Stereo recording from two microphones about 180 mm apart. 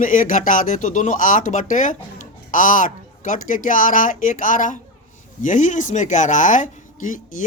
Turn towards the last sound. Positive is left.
turn(degrees=45)  # may be behind; listen again after turning